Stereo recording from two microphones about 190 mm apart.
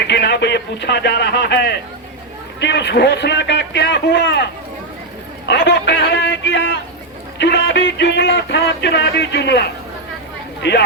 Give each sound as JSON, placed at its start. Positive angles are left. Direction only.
{"t": 0.1, "sound": "speech", "side_deg": 65}
{"t": 5.5, "sound": "speech", "side_deg": 65}